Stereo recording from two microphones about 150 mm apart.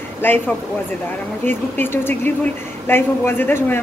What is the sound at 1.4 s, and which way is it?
A woman's voice, 15° left (ahead or behind).